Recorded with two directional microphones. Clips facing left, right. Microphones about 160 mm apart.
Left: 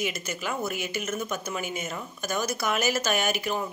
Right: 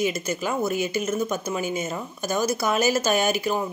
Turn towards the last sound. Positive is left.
turn(degrees=-30)  # may be behind; listen again after turning